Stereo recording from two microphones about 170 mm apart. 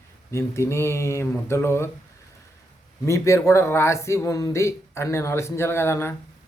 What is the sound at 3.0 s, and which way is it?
A man's voice, 15° left (ahead or behind).